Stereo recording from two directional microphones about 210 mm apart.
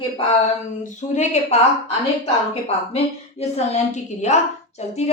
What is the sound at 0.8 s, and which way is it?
A woman's voice, 35° left (ahead or behind).